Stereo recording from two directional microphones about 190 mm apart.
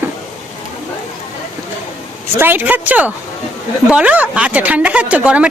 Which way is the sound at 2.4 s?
10° right (ahead or behind).